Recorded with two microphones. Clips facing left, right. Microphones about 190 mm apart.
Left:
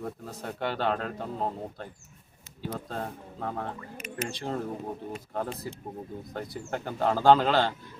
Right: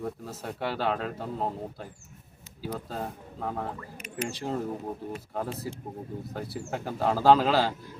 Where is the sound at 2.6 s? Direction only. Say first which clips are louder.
Even; 5° right (ahead or behind).